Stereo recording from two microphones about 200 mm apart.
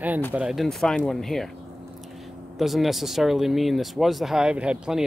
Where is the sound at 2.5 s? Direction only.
Centre (ahead or behind).